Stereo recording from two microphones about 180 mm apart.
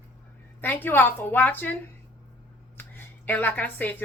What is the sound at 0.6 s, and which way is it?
A woman's voice, 10° left (ahead or behind).